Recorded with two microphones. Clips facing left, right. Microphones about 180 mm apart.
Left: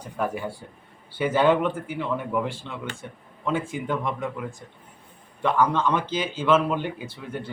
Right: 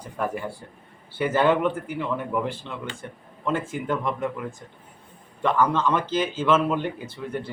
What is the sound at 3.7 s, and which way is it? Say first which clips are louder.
Speech: right 1 dB; centre (ahead or behind).